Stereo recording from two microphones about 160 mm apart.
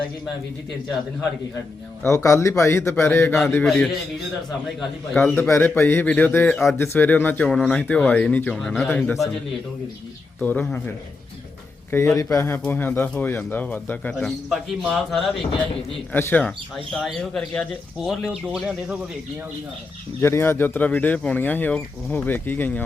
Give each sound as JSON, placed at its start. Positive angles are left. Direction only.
{"t": 2.0, "sound": "speech", "side_deg": 20}
{"t": 5.1, "sound": "speech", "side_deg": 5}
{"t": 5.4, "sound": "speech", "side_deg": 15}
{"t": 10.4, "sound": "speech", "side_deg": 10}
{"t": 16.1, "sound": "speech", "side_deg": 10}
{"t": 20.2, "sound": "speech", "side_deg": 15}